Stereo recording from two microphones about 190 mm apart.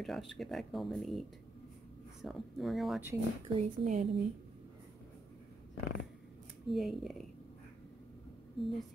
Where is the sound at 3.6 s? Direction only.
35° right (ahead or behind).